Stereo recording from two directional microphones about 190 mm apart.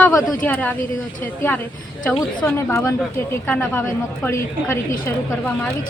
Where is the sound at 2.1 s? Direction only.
20° left (ahead or behind).